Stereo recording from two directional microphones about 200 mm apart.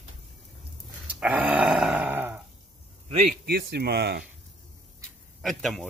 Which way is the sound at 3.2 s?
45° right (ahead or behind).